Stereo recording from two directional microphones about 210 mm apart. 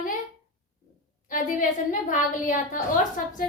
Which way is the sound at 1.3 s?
40° left (ahead or behind).